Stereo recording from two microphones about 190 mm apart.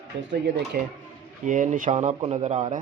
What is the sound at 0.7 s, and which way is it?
Speech, 50° right (ahead or behind).